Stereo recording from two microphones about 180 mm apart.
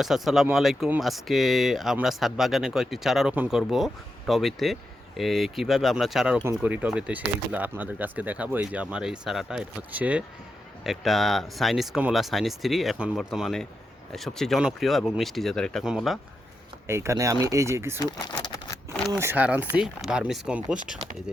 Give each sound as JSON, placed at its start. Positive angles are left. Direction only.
{"t": 0.0, "sound": "speech", "side_deg": 0}
{"t": 16.8, "sound": "speech", "side_deg": -15}
{"t": 18.9, "sound": "a sound", "side_deg": -15}
{"t": 19.2, "sound": "speech", "side_deg": -10}